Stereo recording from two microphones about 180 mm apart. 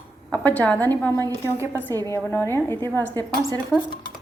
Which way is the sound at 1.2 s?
20° right (ahead or behind).